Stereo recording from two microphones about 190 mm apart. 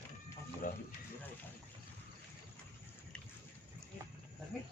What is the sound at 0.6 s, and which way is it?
Speech, 45° left (ahead or behind).